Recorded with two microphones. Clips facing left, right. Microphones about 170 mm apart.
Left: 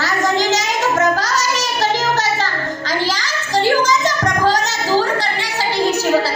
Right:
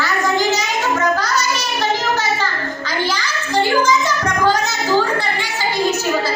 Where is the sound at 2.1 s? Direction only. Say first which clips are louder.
Left 1 dB; 40° left (ahead or behind).